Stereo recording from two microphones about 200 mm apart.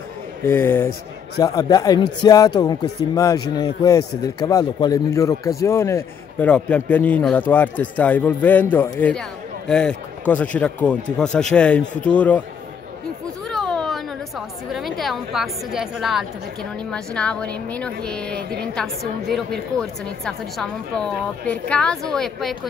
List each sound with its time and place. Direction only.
0.4 s a woman's voice: 10° left (ahead or behind)
13.5 s a sound: 5° left (ahead or behind)
14.7 s a woman's voice: centre (ahead or behind)